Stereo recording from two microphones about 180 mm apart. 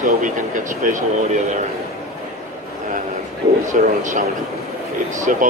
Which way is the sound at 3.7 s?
45° right (ahead or behind).